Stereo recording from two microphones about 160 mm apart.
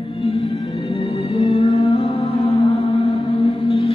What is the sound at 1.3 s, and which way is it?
Music, 35° left (ahead or behind).